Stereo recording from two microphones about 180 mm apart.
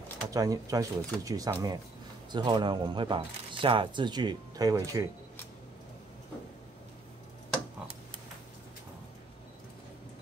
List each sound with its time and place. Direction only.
0.3 s speech: 20° right (ahead or behind)